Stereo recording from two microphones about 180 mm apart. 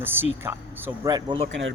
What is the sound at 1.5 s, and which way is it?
Speech, 90° right.